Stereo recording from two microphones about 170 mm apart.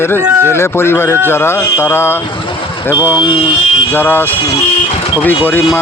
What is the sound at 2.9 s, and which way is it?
Speech, 10° right (ahead or behind).